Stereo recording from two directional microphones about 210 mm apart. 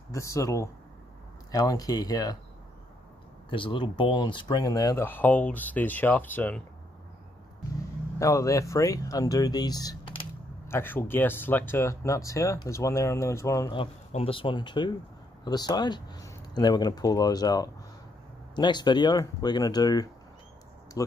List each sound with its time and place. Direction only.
0.1 s speech: 15° left (ahead or behind)
3.4 s speech: 25° left (ahead or behind)
8.2 s speech: 15° left (ahead or behind)